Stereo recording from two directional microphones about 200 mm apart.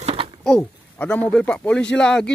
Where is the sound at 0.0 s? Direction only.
30° right (ahead or behind).